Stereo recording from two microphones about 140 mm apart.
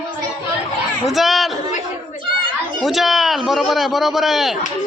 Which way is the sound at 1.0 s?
Centre (ahead or behind).